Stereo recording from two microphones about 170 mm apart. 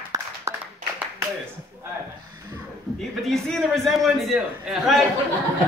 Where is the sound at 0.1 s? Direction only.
15° right (ahead or behind).